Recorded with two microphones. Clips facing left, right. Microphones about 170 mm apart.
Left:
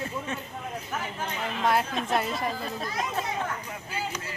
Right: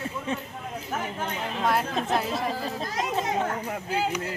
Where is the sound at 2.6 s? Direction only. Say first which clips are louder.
Right 2 dB; 35° right (ahead or behind).